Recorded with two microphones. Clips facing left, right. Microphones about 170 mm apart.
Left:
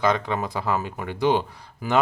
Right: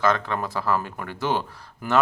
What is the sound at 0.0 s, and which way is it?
Speech, 15° left (ahead or behind).